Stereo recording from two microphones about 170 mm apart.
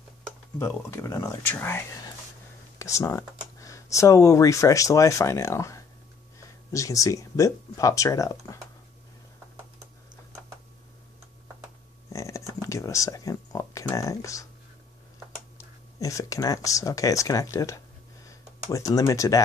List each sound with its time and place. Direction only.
0.6 s speech: 15° left (ahead or behind)
12.1 s a sound: 20° left (ahead or behind)
16.0 s speech: 20° left (ahead or behind)